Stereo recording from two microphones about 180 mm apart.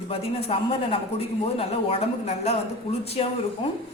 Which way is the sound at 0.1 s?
30° left (ahead or behind).